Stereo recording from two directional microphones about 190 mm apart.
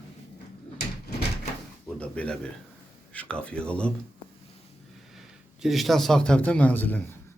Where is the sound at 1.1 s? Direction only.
55° left (ahead or behind).